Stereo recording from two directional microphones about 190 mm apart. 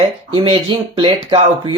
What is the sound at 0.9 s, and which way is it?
Speech, 25° right (ahead or behind).